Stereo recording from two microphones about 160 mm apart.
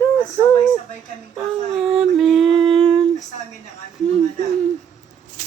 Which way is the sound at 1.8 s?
5° right (ahead or behind).